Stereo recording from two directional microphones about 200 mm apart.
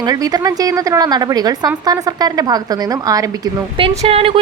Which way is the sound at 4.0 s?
30° right (ahead or behind).